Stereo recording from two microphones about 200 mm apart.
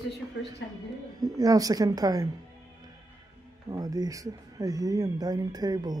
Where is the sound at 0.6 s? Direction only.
60° left (ahead or behind).